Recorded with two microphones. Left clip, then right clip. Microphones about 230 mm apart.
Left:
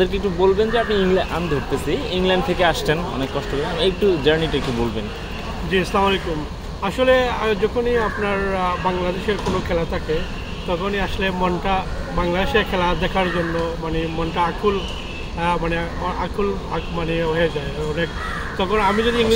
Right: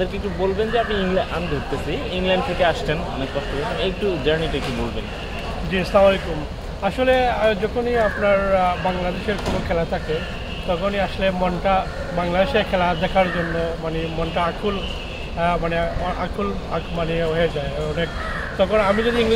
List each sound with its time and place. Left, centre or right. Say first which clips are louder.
0.0 s speech: left 5 dB; left
5.7 s speech: right 3 dB; centre
10.9 s speech: right 1 dB; centre
15.4 s speech: right 1 dB; centre
18.6 s speech: right 1 dB; centre